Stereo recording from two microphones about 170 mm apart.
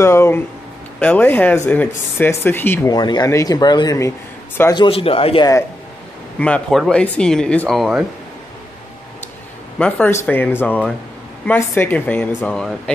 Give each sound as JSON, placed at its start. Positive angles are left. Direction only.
{"t": 0.0, "sound": "speech", "side_deg": 15}
{"t": 4.8, "sound": "speech", "side_deg": 35}
{"t": 6.4, "sound": "speech", "side_deg": 5}
{"t": 9.8, "sound": "speech", "side_deg": 5}